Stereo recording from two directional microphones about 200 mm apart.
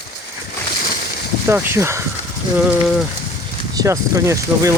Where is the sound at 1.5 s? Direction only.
10° right (ahead or behind).